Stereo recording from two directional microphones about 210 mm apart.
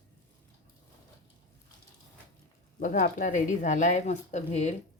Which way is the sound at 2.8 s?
40° left (ahead or behind).